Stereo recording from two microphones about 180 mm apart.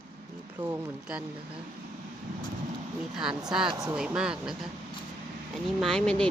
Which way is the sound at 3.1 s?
5° right (ahead or behind).